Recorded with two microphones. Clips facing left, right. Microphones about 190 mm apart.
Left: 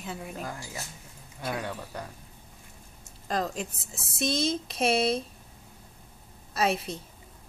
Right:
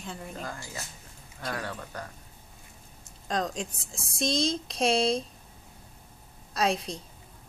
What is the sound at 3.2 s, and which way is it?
A woman's voice, 5° left (ahead or behind).